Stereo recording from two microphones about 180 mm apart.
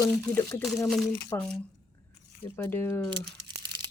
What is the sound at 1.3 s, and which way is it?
Speech, 20° left (ahead or behind).